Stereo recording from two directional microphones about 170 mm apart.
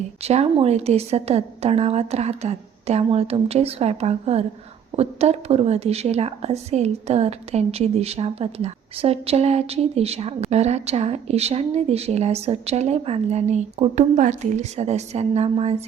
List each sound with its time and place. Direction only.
0.2 s a woman's voice: 40° right (ahead or behind)